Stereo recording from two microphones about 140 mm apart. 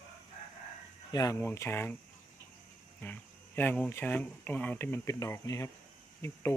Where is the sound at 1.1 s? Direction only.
25° left (ahead or behind).